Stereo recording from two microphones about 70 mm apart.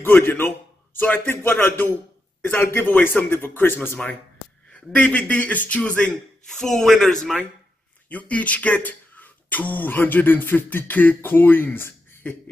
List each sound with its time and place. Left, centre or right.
0.0 s speech: left
6.4 s a man's voice: centre
8.1 s speech: left